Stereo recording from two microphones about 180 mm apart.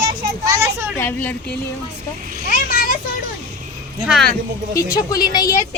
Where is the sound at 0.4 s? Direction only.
15° right (ahead or behind).